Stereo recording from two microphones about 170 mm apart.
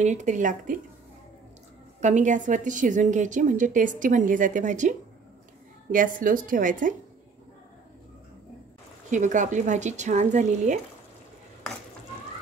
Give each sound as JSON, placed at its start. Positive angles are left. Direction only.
{"t": 0.0, "sound": "a woman's voice", "side_deg": -45}
{"t": 2.0, "sound": "a woman's voice", "side_deg": -45}
{"t": 9.1, "sound": "a woman's voice", "side_deg": -45}